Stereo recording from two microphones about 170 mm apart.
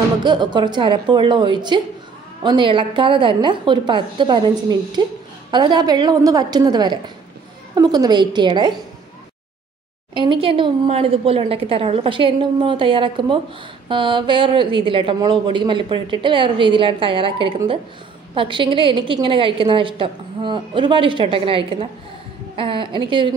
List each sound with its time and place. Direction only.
0.2 s speech: 25° right (ahead or behind)
10.1 s a woman's voice: 30° right (ahead or behind)